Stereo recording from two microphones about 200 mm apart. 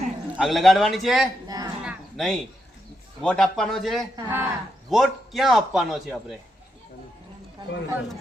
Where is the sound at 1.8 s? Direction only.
Centre (ahead or behind).